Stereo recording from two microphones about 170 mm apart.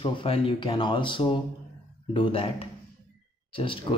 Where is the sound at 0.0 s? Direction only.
30° left (ahead or behind).